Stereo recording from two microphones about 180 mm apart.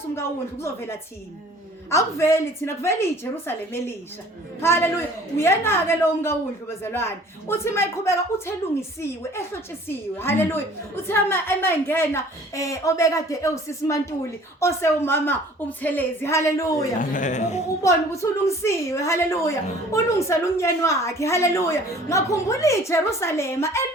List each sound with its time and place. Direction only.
0.2 s a woman's voice: 15° left (ahead or behind)
10.2 s a woman's voice: 10° left (ahead or behind)
17.0 s a woman's voice: 45° left (ahead or behind)
17.8 s a woman's voice: 15° left (ahead or behind)